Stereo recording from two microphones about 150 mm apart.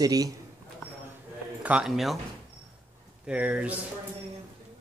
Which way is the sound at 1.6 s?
5° right (ahead or behind).